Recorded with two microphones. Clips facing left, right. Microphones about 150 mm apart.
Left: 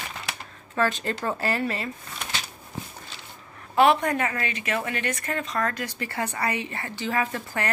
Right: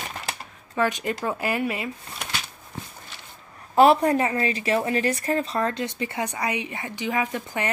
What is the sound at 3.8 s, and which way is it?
A woman's voice, 35° right (ahead or behind).